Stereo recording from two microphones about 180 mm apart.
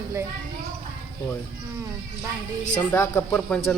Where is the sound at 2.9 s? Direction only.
15° left (ahead or behind).